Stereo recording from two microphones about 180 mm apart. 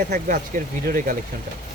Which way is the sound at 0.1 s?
50° right (ahead or behind).